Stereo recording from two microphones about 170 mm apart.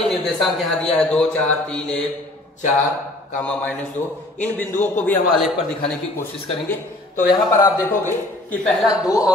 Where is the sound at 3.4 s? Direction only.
5° left (ahead or behind).